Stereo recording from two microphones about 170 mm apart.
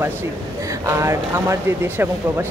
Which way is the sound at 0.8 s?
15° right (ahead or behind).